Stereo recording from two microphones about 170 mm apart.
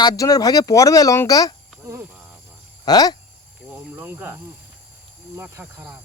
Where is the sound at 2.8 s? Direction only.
25° left (ahead or behind).